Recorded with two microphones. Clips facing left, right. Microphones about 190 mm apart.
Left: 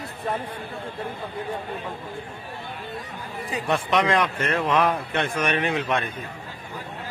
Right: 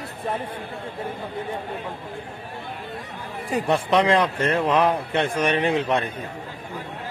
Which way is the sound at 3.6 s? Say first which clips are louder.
Right 2 dB; 30° right (ahead or behind).